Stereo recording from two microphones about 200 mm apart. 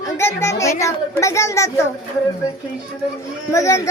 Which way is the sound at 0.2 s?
10° left (ahead or behind).